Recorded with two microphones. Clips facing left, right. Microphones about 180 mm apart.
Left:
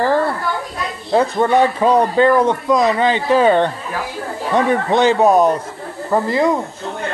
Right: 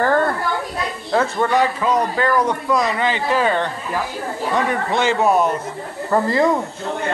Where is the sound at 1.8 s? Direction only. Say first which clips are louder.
Left 6 dB; 30° left (ahead or behind).